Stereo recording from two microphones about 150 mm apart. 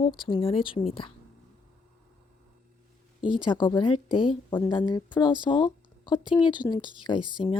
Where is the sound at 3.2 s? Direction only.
30° left (ahead or behind).